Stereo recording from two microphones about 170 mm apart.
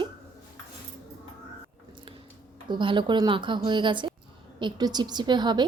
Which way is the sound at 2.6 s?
30° right (ahead or behind).